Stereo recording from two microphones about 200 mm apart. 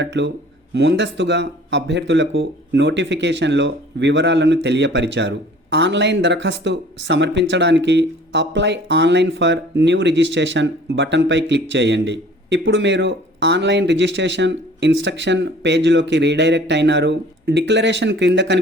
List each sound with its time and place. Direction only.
0.0 s speech: 60° right (ahead or behind)